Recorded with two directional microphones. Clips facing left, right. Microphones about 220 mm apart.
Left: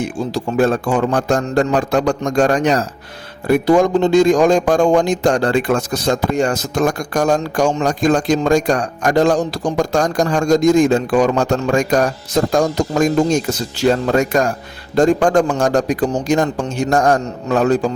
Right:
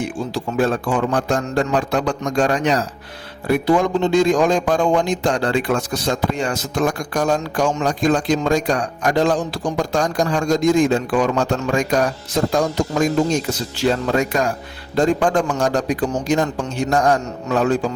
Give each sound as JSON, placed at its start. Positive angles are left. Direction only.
{"t": 0.3, "sound": "a man's voice", "side_deg": 45}
{"t": 14.1, "sound": "a man's voice", "side_deg": 45}